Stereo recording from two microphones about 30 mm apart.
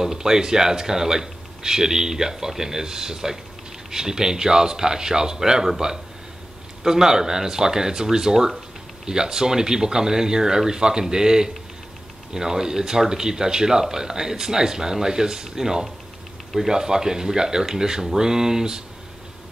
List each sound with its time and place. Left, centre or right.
0.0 s speech: centre
6.8 s speech: centre